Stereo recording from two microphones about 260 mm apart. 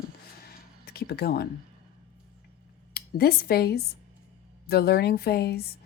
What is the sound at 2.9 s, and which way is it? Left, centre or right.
Speech, left.